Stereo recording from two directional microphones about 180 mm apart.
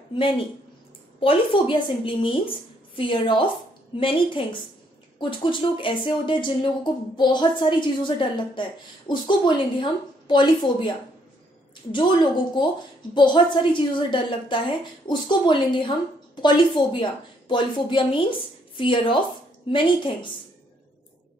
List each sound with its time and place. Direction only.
1.2 s speech: 30° left (ahead or behind)
11.9 s speech: 25° left (ahead or behind)